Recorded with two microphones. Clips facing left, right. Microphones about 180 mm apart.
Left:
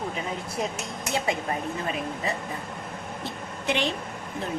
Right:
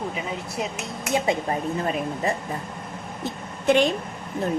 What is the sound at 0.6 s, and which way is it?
Speech, centre (ahead or behind).